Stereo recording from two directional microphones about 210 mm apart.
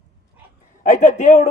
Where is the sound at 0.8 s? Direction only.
40° left (ahead or behind).